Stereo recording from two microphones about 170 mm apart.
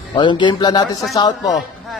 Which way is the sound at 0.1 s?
25° left (ahead or behind).